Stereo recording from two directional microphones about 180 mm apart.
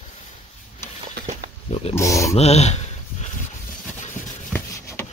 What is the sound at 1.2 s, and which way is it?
Pig, 65° right (ahead or behind).